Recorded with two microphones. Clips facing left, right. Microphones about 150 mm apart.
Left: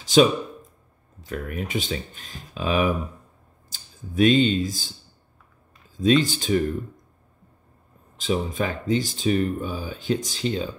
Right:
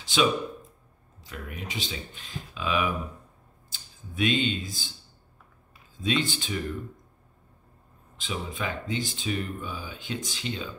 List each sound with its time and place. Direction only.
0.0 s speech: 40° left (ahead or behind)
5.9 s speech: 40° left (ahead or behind)
8.2 s speech: 40° left (ahead or behind)